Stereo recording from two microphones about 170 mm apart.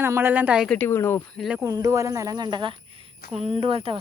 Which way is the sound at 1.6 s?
20° right (ahead or behind).